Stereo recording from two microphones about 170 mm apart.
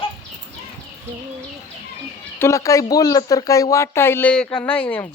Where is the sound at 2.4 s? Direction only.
15° left (ahead or behind).